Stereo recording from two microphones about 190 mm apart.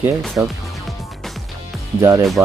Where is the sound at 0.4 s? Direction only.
10° right (ahead or behind).